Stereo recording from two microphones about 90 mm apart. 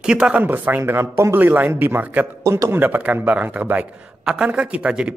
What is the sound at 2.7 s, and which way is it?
Speech, 20° right (ahead or behind).